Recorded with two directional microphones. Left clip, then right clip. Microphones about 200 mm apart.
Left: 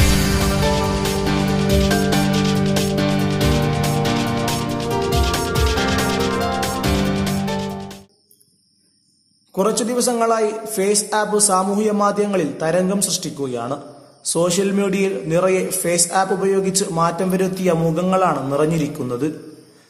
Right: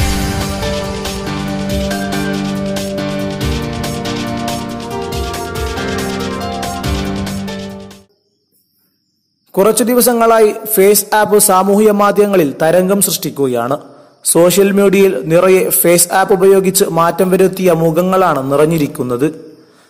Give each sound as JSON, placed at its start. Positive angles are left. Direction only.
{"t": 0.0, "sound": "music", "side_deg": 0}
{"t": 9.6, "sound": "a man's voice", "side_deg": -35}